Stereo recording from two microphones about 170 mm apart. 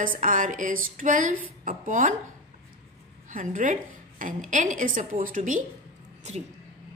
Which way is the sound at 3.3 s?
50° right (ahead or behind).